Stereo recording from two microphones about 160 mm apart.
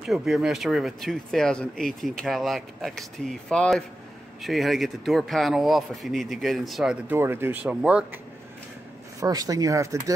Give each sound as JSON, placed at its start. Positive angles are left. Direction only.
{"t": 0.0, "sound": "speech", "side_deg": 0}
{"t": 7.2, "sound": "speech", "side_deg": -15}
{"t": 9.2, "sound": "speech", "side_deg": -25}